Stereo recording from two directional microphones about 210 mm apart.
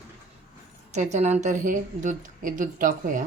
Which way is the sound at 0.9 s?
35° right (ahead or behind).